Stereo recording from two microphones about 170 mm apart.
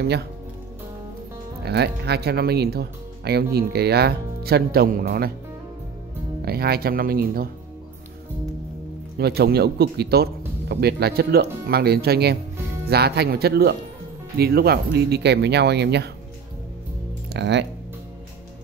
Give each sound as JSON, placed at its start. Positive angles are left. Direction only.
{"t": 0.0, "sound": "speech", "side_deg": -70}
{"t": 1.6, "sound": "speech", "side_deg": -75}
{"t": 6.4, "sound": "speech", "side_deg": -65}
{"t": 9.2, "sound": "speech", "side_deg": -70}
{"t": 17.3, "sound": "speech", "side_deg": -90}